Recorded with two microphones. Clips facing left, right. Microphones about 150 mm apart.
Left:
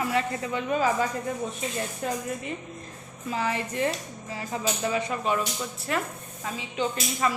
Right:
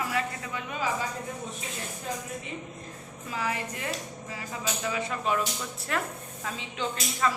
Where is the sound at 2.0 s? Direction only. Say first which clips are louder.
Left 5 dB; 65° left (ahead or behind).